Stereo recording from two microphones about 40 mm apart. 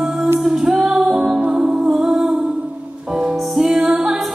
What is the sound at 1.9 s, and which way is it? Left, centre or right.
Music, centre.